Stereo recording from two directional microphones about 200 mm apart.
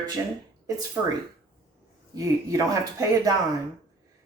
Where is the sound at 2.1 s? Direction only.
15° right (ahead or behind).